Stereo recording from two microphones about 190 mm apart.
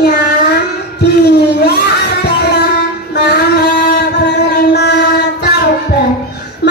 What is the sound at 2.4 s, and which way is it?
Music, 60° left (ahead or behind).